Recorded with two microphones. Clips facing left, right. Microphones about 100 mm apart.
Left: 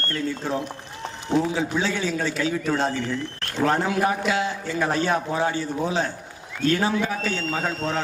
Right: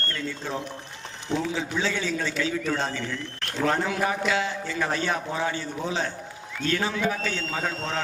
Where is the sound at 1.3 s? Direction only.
15° left (ahead or behind).